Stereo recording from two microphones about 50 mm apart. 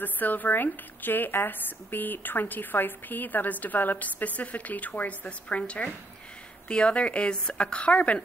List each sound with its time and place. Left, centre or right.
0.0 s speech: left